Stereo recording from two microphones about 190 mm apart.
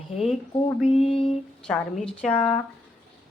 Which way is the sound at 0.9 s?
30° left (ahead or behind).